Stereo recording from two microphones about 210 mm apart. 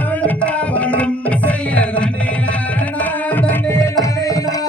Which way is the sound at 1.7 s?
5° left (ahead or behind).